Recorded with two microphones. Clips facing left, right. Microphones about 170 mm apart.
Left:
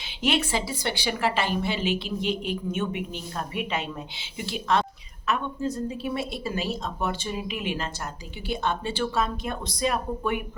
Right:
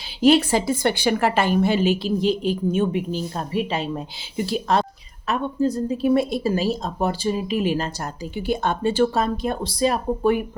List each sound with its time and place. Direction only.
0.2 s a woman's voice: 35° right (ahead or behind)